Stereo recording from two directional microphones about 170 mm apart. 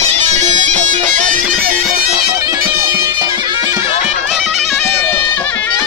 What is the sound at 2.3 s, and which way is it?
Bagpipes, 20° right (ahead or behind).